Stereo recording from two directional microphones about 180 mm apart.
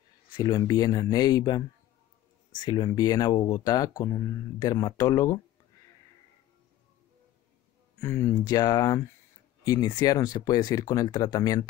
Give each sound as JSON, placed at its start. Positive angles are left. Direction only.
{"t": 0.4, "sound": "speech", "side_deg": 20}
{"t": 2.6, "sound": "speech", "side_deg": 25}
{"t": 8.0, "sound": "speech", "side_deg": 15}